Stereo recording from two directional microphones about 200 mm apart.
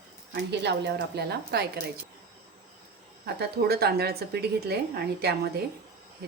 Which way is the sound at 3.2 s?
55° right (ahead or behind).